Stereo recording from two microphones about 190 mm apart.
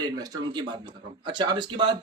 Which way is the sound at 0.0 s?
20° right (ahead or behind).